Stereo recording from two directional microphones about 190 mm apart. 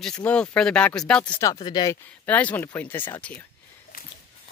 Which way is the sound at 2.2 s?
10° left (ahead or behind).